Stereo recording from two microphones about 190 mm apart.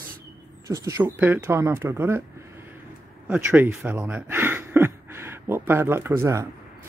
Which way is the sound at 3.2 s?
10° right (ahead or behind).